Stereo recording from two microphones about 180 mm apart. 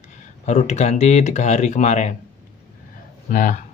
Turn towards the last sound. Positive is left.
turn(degrees=45)  # may be behind; listen again after turning